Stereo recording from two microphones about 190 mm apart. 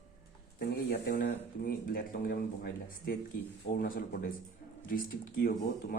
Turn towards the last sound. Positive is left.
turn(degrees=50)  # may be behind; listen again after turning